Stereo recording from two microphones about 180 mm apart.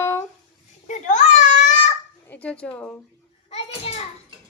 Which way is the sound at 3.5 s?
35° left (ahead or behind).